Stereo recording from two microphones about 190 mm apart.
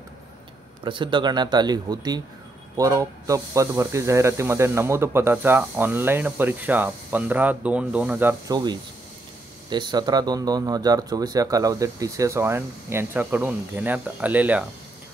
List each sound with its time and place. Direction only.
0.8 s speech: 25° right (ahead or behind)
9.7 s speech: 25° right (ahead or behind); by 14.7 s 10° right (ahead or behind)